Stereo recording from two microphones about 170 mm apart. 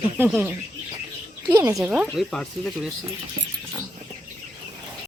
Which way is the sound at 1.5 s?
20° right (ahead or behind).